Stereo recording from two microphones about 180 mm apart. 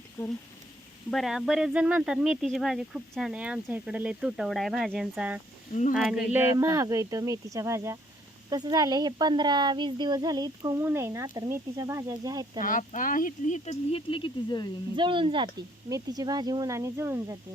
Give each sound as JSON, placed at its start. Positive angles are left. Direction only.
{"t": 1.1, "sound": "speech", "side_deg": 0}
{"t": 6.3, "sound": "speech", "side_deg": -15}
{"t": 12.5, "sound": "speech", "side_deg": 50}
{"t": 14.9, "sound": "speech", "side_deg": -25}